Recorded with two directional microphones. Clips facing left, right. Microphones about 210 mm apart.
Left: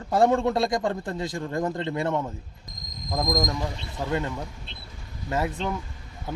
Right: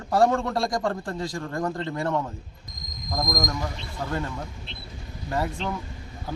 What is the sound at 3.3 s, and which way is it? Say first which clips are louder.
Speech: left 2 dB; 30° left (ahead or behind).